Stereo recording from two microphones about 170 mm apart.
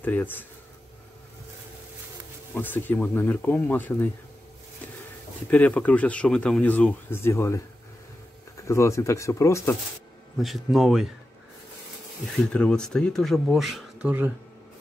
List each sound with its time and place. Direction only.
0.0 s speech: 10° left (ahead or behind)
2.5 s speech: 10° left (ahead or behind)
5.5 s speech: 10° left (ahead or behind)
10.3 s speech: centre (ahead or behind)
12.5 s speech: 5° left (ahead or behind)